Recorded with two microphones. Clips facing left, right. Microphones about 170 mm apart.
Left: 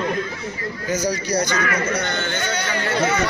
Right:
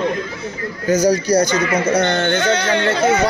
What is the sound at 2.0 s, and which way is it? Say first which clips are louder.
Speech: right 8 dB; 70° right (ahead or behind).